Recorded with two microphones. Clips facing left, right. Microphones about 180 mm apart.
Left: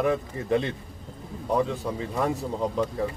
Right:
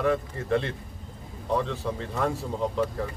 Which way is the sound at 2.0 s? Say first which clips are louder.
Left 3 dB; 15° left (ahead or behind).